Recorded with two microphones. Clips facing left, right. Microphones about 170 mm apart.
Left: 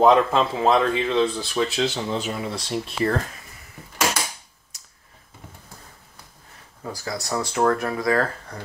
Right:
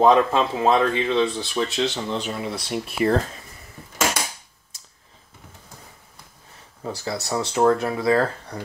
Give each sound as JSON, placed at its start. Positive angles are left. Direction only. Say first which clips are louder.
{"t": 0.0, "sound": "speech", "louder": "even", "side_deg": 0}
{"t": 6.9, "sound": "speech", "louder": "right 2 dB", "side_deg": -25}